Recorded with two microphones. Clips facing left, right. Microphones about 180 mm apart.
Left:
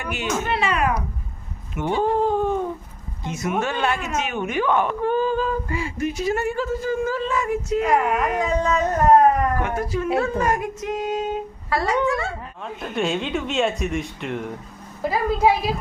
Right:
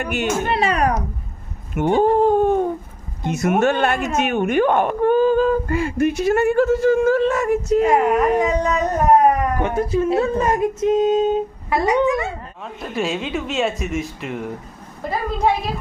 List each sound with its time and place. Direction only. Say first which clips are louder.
0.0 s speech: right 6 dB; 60° right (ahead or behind)
0.4 s speech: right 2 dB; 40° right (ahead or behind)
1.7 s cat: right 5 dB; 50° right (ahead or behind)
3.2 s speech: right 7 dB; 65° right (ahead or behind); by 7.8 s 50° right (ahead or behind)
7.8 s speech: right 3 dB; 25° right (ahead or behind)
8.4 s music: right 2 dB; 20° right (ahead or behind)
9.6 s speech: right 5 dB; 25° right (ahead or behind)
12.6 s a woman's voice: right 1 dB; centre (ahead or behind)